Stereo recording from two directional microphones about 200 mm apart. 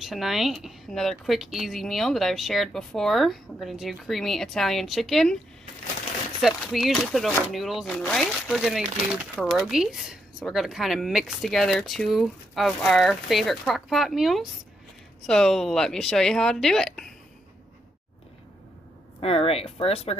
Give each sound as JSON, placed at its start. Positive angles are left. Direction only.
{"t": 0.0, "sound": "speech", "side_deg": 0}
{"t": 6.4, "sound": "speech", "side_deg": 0}
{"t": 19.1, "sound": "speech", "side_deg": 30}